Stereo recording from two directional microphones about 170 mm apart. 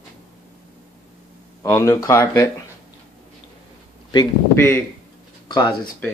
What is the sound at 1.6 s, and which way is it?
Speech, 15° left (ahead or behind).